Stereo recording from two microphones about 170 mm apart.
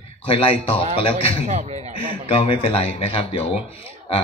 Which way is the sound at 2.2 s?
35° left (ahead or behind).